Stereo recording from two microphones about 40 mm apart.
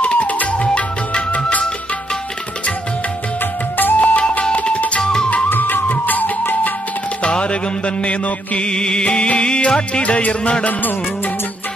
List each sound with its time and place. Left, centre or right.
0.0 s music: left
3.7 s music: left
5.5 s music: left
8.0 s music: left